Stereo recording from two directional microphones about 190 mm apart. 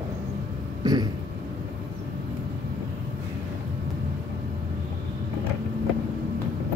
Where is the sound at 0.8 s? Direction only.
20° right (ahead or behind).